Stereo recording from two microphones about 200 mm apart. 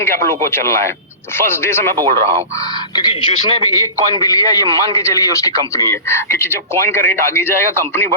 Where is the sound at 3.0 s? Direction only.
20° left (ahead or behind).